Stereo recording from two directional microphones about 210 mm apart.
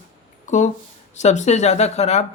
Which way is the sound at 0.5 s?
35° left (ahead or behind).